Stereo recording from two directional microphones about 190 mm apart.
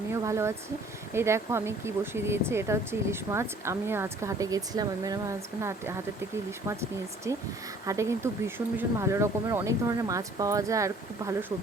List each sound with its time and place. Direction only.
0.1 s a sound: 15° right (ahead or behind)
1.1 s speech: 15° right (ahead or behind)
7.3 s speech: 15° right (ahead or behind)